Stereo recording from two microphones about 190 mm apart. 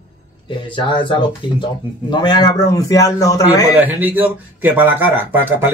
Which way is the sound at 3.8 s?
10° right (ahead or behind).